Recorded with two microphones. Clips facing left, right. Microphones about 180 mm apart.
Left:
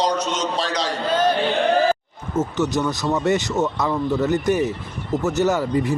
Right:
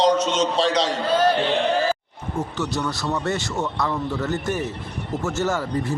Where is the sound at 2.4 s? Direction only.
20° left (ahead or behind).